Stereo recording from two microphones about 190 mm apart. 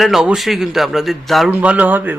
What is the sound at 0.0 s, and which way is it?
Speech, centre (ahead or behind).